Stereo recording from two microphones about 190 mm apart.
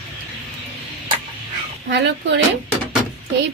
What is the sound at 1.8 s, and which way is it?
Speech, 65° right (ahead or behind).